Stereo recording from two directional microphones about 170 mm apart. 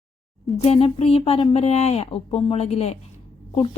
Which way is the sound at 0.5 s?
40° left (ahead or behind).